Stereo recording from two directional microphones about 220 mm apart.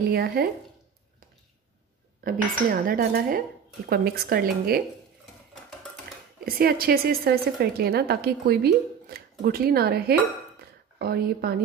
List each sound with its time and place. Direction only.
0.1 s a woman's voice: 45° right (ahead or behind)
2.2 s cutlery: 40° right (ahead or behind)
3.9 s a woman's voice: 45° right (ahead or behind)
6.4 s a woman's voice: 45° right (ahead or behind)